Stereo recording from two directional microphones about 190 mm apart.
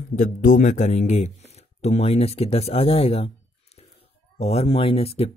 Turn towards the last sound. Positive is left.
turn(degrees=30)  # may be behind; listen again after turning